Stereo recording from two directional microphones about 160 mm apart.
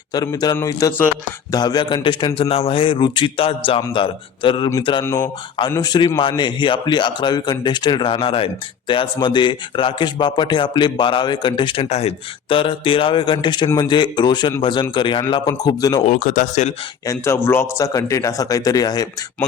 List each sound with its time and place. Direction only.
0.1 s a man's voice: 25° left (ahead or behind)
5.0 s speech: 15° left (ahead or behind)
5.7 s a man's voice: 25° left (ahead or behind)
16.0 s speech: 55° left (ahead or behind)
17.1 s a man's voice: 15° left (ahead or behind)